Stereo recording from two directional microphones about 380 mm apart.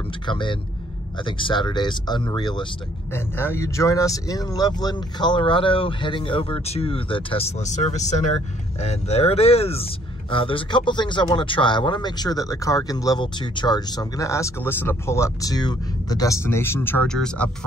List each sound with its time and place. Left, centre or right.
0.3 s speech: centre